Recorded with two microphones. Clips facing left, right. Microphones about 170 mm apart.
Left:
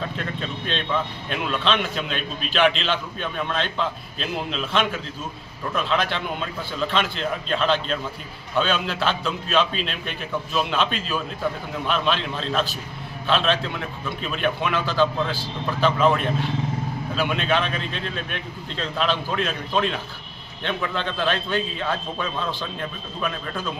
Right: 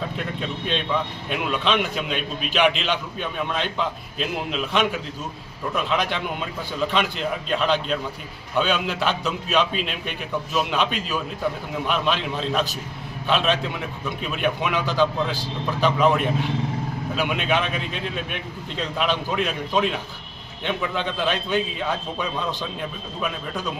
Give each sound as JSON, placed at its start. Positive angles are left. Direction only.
{"t": 0.1, "sound": "a man's voice", "side_deg": -5}